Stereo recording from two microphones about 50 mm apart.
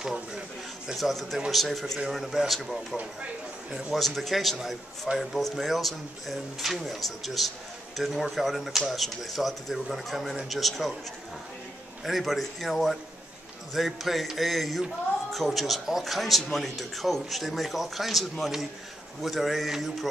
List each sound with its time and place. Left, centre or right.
0.9 s speech: centre
12.0 s speech: centre